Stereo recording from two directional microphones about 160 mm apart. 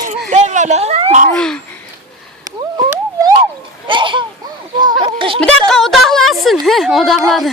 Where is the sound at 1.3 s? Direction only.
5° left (ahead or behind).